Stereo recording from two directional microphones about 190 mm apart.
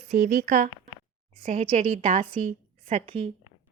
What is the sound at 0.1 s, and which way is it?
A woman's voice, 45° right (ahead or behind).